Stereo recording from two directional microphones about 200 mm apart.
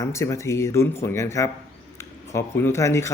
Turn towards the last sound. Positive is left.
turn(degrees=15)  # may be behind; listen again after turning